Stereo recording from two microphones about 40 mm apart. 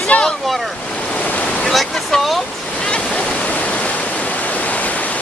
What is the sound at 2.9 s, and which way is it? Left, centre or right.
Waterfall, left.